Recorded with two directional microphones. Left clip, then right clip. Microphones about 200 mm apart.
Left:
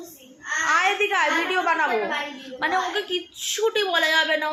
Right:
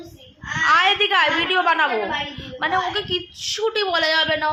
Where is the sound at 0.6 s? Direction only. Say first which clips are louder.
Right 5 dB; 15° right (ahead or behind).